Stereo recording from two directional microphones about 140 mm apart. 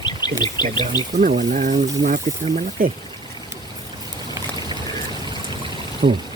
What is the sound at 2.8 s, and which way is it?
Speech, 90° right.